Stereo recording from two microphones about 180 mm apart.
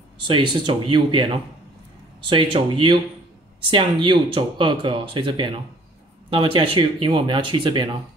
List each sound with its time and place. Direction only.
0.2 s speech: 25° right (ahead or behind)